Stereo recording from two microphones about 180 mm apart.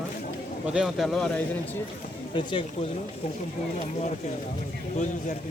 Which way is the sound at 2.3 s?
30° left (ahead or behind).